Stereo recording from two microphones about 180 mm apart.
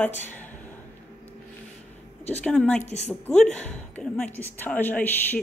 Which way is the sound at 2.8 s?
40° left (ahead or behind).